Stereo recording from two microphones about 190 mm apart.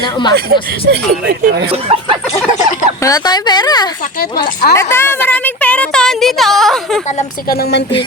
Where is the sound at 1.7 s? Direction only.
30° right (ahead or behind).